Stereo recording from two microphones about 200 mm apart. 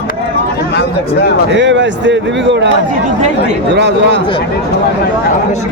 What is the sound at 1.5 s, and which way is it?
Speech, 65° right (ahead or behind).